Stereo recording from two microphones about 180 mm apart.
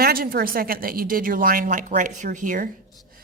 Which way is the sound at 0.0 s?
55° right (ahead or behind).